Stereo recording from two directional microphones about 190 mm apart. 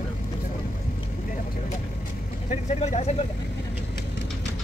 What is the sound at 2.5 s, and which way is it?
Speech, 35° left (ahead or behind).